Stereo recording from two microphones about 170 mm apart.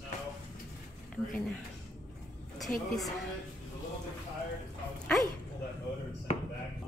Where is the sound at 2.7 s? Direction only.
10° left (ahead or behind).